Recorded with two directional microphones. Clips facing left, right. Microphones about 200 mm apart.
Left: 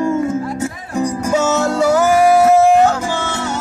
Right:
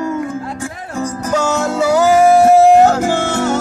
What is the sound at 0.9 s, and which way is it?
Music, 10° left (ahead or behind).